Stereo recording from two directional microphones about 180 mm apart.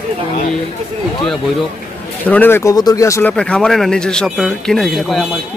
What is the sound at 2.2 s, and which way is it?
Speech, 10° left (ahead or behind).